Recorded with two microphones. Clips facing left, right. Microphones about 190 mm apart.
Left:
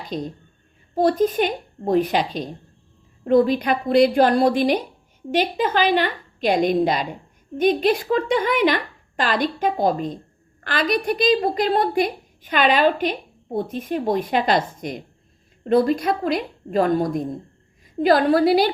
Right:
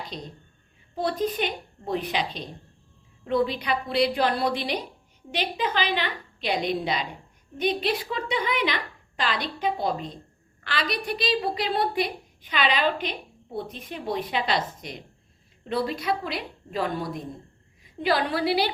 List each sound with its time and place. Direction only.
0.1 s a woman's voice: 45° left (ahead or behind)